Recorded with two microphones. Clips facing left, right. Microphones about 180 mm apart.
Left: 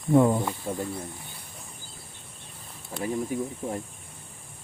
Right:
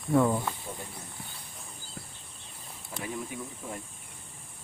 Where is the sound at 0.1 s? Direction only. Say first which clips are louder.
Left 4 dB; 20° left (ahead or behind).